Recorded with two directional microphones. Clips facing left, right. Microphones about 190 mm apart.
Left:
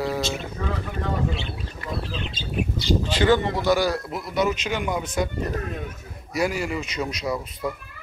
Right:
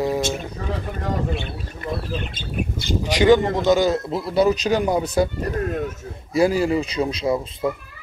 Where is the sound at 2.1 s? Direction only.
50° right (ahead or behind).